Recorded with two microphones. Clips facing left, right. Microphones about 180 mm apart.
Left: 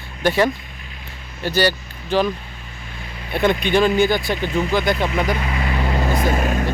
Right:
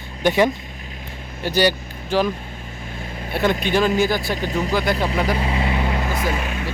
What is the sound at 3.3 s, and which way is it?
Speech, 5° right (ahead or behind).